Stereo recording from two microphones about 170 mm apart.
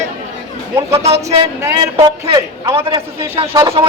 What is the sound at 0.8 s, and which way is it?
A man's voice, 15° right (ahead or behind).